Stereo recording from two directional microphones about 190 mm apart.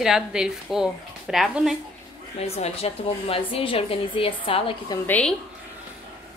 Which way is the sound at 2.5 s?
35° left (ahead or behind).